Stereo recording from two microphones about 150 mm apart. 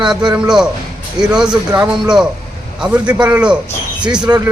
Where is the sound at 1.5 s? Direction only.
25° right (ahead or behind).